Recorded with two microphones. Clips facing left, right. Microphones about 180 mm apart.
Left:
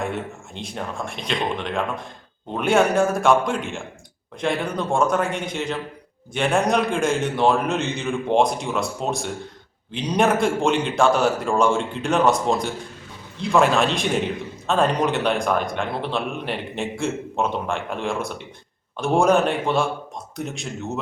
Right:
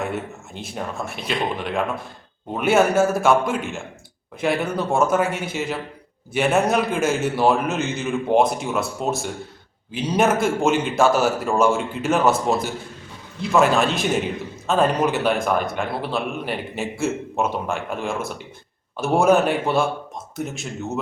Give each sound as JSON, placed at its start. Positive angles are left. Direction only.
{"t": 0.0, "sound": "a man's voice", "side_deg": -5}